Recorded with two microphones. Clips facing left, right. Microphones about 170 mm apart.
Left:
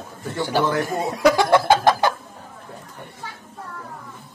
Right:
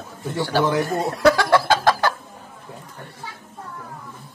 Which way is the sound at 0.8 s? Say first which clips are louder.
Right 1 dB; 15° left (ahead or behind).